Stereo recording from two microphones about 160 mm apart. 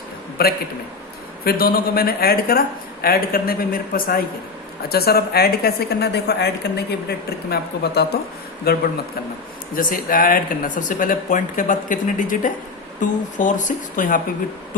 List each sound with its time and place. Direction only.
0.4 s a woman's voice: 70° left (ahead or behind)
9.7 s speech: 60° left (ahead or behind)